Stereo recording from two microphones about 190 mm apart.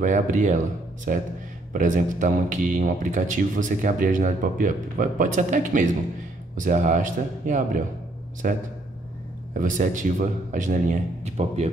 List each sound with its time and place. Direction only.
0.0 s a man's voice: 40° right (ahead or behind)